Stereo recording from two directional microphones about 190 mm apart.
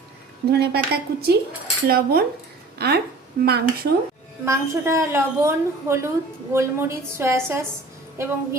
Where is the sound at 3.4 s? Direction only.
55° right (ahead or behind).